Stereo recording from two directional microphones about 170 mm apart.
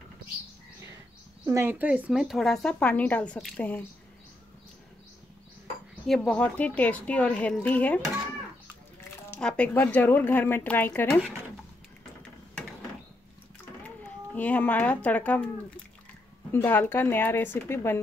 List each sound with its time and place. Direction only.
1.4 s speech: 15° right (ahead or behind); by 3.8 s 10° left (ahead or behind)
6.0 s speech: 5° left (ahead or behind)
9.3 s speech: 5° left (ahead or behind)
14.3 s speech: 10° left (ahead or behind)